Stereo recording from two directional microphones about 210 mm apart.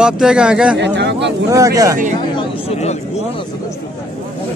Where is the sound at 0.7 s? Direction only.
55° right (ahead or behind).